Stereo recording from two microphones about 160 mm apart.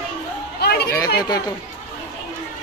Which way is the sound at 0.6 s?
80° left.